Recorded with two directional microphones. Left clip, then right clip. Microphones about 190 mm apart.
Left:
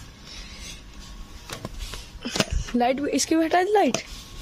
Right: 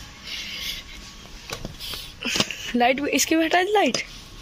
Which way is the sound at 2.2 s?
10° left (ahead or behind).